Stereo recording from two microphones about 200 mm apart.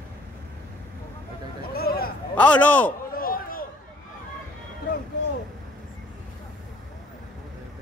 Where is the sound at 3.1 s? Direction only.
45° left (ahead or behind).